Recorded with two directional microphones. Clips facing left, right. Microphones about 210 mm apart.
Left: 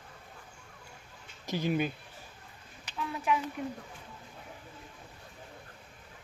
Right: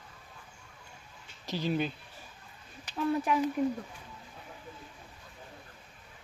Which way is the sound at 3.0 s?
40° right (ahead or behind).